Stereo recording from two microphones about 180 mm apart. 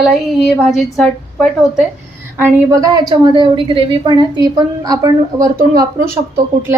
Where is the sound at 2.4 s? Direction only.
15° right (ahead or behind).